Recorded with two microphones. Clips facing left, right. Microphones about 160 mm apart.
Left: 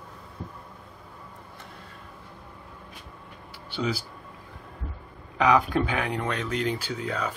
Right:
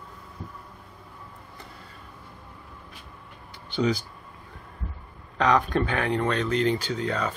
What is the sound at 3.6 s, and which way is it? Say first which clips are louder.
Speech: right 4 dB; 5° left (ahead or behind).